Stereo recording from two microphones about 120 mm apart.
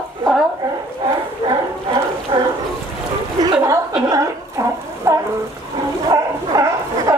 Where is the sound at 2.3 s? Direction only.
40° right (ahead or behind).